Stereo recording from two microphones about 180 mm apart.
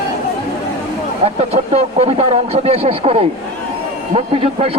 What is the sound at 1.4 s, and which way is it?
Speech, 35° right (ahead or behind).